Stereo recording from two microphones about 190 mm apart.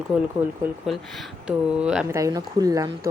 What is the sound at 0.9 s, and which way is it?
Speech, centre (ahead or behind).